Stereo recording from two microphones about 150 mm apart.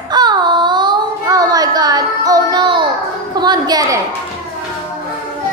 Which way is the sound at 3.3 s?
25° right (ahead or behind).